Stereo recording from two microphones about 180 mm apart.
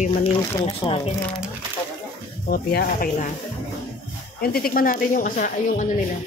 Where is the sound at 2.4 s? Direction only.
60° left (ahead or behind).